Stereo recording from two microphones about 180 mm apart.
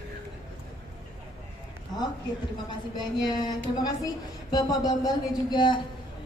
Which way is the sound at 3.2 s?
20° left (ahead or behind).